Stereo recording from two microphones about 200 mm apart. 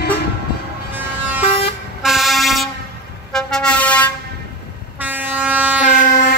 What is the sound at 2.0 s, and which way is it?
Vehicle, centre (ahead or behind).